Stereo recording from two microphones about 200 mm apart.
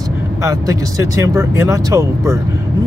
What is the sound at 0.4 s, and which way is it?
Speech, 15° right (ahead or behind).